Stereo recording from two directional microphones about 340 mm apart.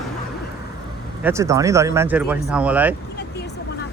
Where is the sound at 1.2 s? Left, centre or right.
Centre.